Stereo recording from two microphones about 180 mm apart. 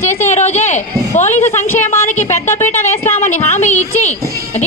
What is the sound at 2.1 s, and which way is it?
Speech, 40° left (ahead or behind).